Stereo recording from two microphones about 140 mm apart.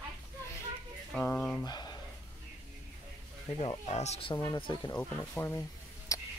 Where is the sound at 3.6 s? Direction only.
50° left (ahead or behind).